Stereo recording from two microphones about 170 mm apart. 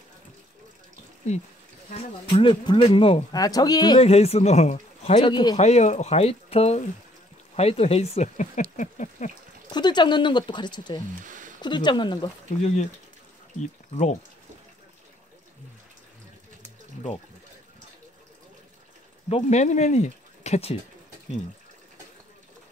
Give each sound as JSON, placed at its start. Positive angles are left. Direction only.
{"t": 2.0, "sound": "a man's voice", "side_deg": 35}
{"t": 3.3, "sound": "speech", "side_deg": 20}
{"t": 4.0, "sound": "a man's voice", "side_deg": 35}
{"t": 5.6, "sound": "a man's voice", "side_deg": 40}
{"t": 8.7, "sound": "patter", "side_deg": 45}
{"t": 9.7, "sound": "speech", "side_deg": 25}
{"t": 11.2, "sound": "a sound", "side_deg": -50}
{"t": 11.6, "sound": "speech", "side_deg": 25}
{"t": 12.4, "sound": "a man's voice", "side_deg": 40}
{"t": 19.2, "sound": "speech", "side_deg": 40}